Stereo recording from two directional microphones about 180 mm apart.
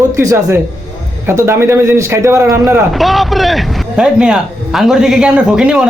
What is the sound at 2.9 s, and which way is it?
Speech, centre (ahead or behind).